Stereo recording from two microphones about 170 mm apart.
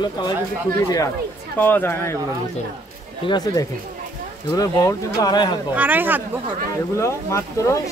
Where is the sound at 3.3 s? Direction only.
20° left (ahead or behind).